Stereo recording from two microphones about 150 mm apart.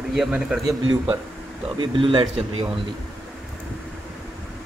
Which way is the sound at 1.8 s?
35° right (ahead or behind).